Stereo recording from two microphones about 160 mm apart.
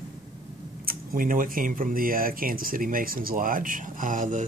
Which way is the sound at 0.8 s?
65° right (ahead or behind).